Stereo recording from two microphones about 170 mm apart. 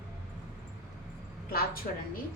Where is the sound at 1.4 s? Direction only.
60° left (ahead or behind).